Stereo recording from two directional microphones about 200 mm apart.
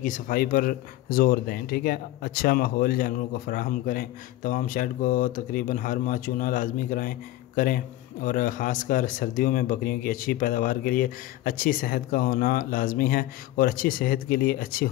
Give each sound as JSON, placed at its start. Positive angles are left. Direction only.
{"t": 0.0, "sound": "speech", "side_deg": 45}